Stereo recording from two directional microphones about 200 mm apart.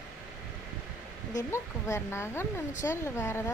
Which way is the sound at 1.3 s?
15° left (ahead or behind).